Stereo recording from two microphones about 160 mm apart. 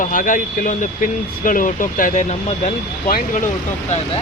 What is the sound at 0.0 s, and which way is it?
Speech, 55° left (ahead or behind).